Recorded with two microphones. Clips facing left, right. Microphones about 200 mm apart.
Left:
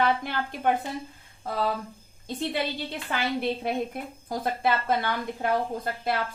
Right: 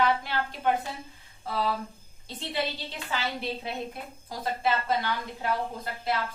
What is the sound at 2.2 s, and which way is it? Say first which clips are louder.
A woman's voice: left 3 dB; 50° left (ahead or behind).